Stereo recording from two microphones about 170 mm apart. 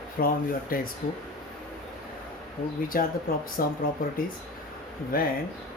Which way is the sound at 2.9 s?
60° left (ahead or behind).